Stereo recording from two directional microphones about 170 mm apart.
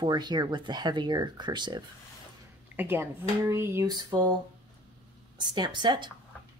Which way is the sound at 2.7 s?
10° right (ahead or behind).